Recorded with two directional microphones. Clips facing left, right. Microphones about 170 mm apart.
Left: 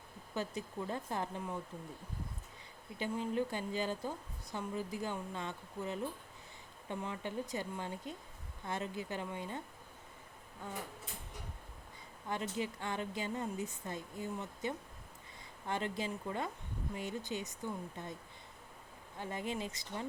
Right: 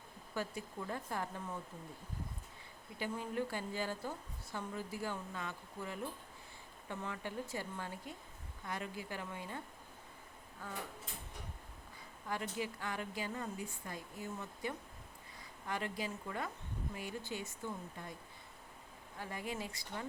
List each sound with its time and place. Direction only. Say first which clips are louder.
0.3 s a woman's voice: left 2 dB; 20° left (ahead or behind)
3.0 s a woman's voice: left 3 dB; 20° left (ahead or behind)
10.6 s a woman's voice: left 2 dB; 25° left (ahead or behind)
12.3 s a woman's voice: left 2 dB; 25° left (ahead or behind)
19.2 s a woman's voice: left 3 dB; 25° left (ahead or behind)